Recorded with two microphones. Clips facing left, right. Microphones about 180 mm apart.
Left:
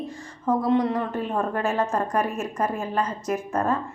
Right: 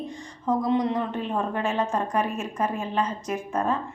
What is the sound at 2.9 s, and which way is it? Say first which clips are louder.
Speech: left 1 dB; 10° right (ahead or behind).